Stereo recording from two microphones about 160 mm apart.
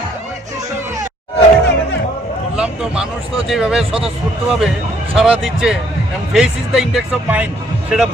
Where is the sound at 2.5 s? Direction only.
5° right (ahead or behind).